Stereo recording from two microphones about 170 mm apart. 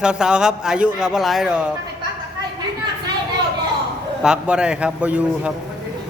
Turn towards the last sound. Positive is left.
turn(degrees=-5)  # may be behind; listen again after turning